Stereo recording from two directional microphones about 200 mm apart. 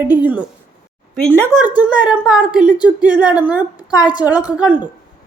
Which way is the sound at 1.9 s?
5° right (ahead or behind).